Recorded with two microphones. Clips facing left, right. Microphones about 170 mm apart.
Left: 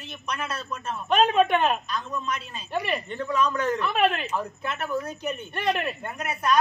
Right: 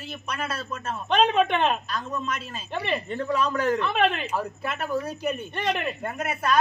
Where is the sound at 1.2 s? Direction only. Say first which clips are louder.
Left 1 dB; 5° left (ahead or behind).